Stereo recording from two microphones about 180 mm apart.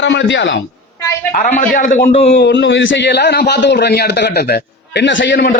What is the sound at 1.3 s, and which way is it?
Speech, 50° left (ahead or behind).